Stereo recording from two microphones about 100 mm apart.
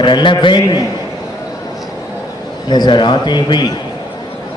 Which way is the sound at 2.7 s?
45° left (ahead or behind).